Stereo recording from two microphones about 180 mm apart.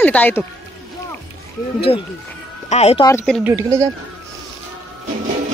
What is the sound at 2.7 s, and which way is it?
Speech, 35° left (ahead or behind).